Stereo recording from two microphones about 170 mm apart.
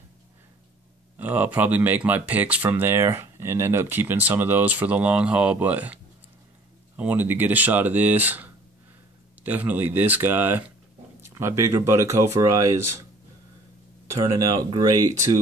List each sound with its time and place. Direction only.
1.1 s speech: 10° right (ahead or behind)
7.0 s speech: 10° right (ahead or behind)
14.1 s speech: 20° right (ahead or behind)